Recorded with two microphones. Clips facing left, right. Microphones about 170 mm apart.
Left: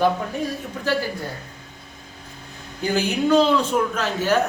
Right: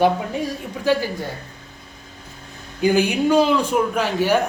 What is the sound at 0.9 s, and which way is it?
Speech, 15° right (ahead or behind).